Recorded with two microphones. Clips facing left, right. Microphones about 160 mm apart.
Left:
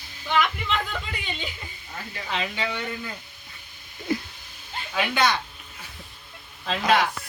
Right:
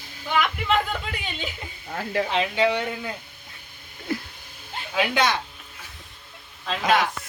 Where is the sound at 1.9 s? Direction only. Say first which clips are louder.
Right 13 dB; 80° right.